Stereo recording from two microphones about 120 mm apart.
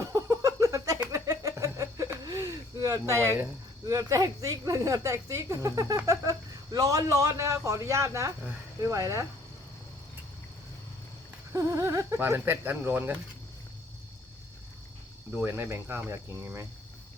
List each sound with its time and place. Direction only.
0.1 s a sound: 25° right (ahead or behind)
3.9 s a man's voice: 30° right (ahead or behind)
11.5 s speech: 25° right (ahead or behind)
15.4 s a man's voice: 20° right (ahead or behind)